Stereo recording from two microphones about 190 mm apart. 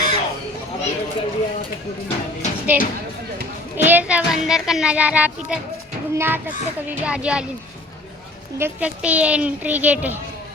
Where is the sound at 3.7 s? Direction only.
10° right (ahead or behind).